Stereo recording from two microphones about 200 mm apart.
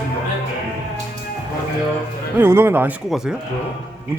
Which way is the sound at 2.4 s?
10° right (ahead or behind).